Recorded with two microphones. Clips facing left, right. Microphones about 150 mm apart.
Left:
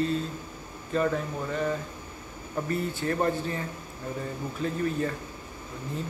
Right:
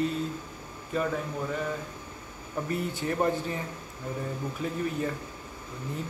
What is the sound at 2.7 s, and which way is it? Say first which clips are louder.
Speech: left 2 dB; 15° right (ahead or behind).